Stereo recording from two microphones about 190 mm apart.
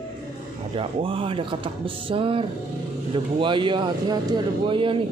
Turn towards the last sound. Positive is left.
turn(degrees=-25)  # may be behind; listen again after turning